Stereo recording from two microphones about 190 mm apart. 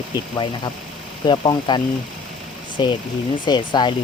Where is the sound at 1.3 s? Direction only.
25° left (ahead or behind).